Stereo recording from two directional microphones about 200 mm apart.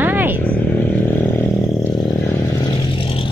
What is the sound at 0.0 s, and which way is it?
Vehicle, 10° right (ahead or behind).